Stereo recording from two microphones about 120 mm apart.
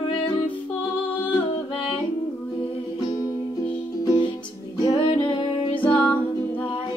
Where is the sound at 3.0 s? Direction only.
35° left (ahead or behind).